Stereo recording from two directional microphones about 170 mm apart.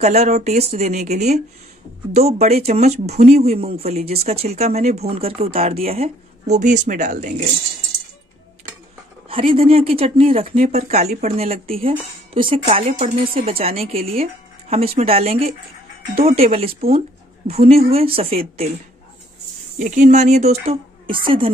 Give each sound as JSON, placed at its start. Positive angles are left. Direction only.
{"t": 0.0, "sound": "speech", "side_deg": -40}
{"t": 9.3, "sound": "speech", "side_deg": -30}
{"t": 19.8, "sound": "speech", "side_deg": -45}
{"t": 20.6, "sound": "a woman's voice", "side_deg": -30}